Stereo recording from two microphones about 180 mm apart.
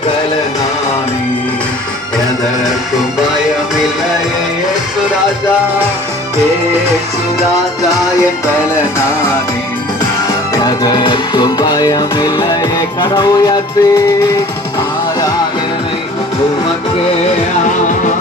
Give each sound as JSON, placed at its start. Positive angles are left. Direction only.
{"t": 10.5, "sound": "music", "side_deg": 20}